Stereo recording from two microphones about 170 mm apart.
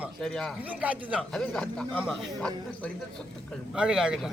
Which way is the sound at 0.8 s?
10° right (ahead or behind).